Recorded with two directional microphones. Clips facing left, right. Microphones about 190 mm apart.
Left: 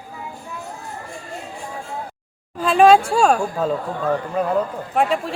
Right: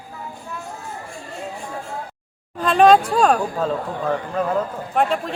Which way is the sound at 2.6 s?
5° left (ahead or behind).